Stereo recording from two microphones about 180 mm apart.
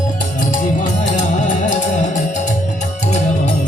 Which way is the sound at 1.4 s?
45° left (ahead or behind).